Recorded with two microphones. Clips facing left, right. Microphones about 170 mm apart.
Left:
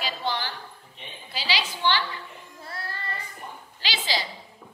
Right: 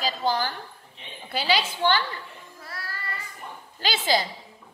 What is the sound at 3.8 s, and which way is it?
Speech, 50° right (ahead or behind).